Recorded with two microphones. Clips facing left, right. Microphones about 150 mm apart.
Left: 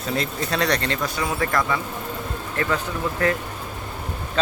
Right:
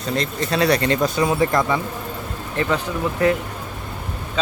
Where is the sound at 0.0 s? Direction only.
5° left (ahead or behind); by 2.7 s 20° right (ahead or behind).